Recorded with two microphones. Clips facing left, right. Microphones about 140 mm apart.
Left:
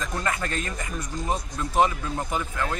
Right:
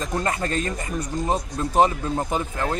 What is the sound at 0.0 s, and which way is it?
Speech, 30° right (ahead or behind).